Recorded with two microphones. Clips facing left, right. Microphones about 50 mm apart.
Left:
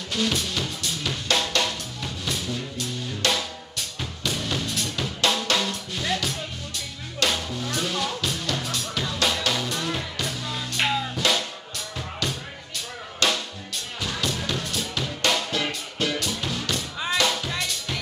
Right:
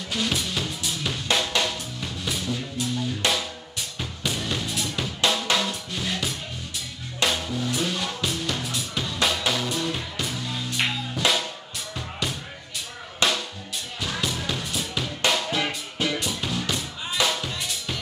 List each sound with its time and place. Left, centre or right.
0.1 s drum kit: centre
2.2 s music: centre
3.3 s drum kit: centre
4.2 s drum: centre
7.2 s music: centre
13.2 s drum: centre
14.0 s music: centre